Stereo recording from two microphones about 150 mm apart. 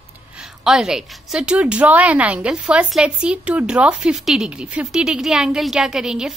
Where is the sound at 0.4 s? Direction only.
5° right (ahead or behind).